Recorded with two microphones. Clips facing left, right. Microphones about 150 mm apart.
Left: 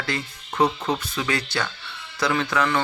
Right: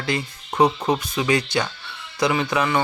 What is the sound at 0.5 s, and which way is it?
Speech, 30° right (ahead or behind).